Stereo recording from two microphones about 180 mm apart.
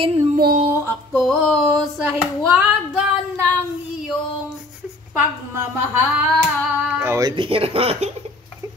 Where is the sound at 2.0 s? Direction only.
5° right (ahead or behind).